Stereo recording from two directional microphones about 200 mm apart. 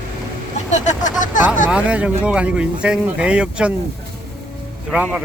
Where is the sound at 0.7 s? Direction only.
35° left (ahead or behind).